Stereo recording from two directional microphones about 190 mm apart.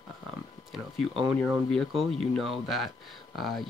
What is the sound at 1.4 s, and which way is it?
Speech, centre (ahead or behind).